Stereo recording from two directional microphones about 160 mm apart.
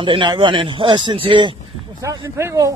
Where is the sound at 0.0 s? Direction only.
30° right (ahead or behind).